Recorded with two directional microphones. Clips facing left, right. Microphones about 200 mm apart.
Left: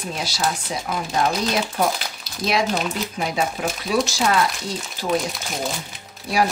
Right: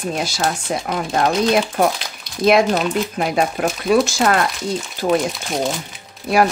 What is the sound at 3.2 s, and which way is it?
Speech, 55° right (ahead or behind).